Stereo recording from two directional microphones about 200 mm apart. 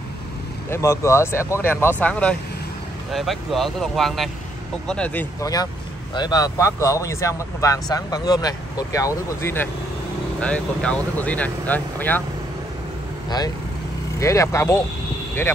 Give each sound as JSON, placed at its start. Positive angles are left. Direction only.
{"t": 0.7, "sound": "speech", "side_deg": 15}
{"t": 14.2, "sound": "speech", "side_deg": 15}